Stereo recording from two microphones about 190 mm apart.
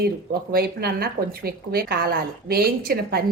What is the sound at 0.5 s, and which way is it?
Speech, 55° right (ahead or behind).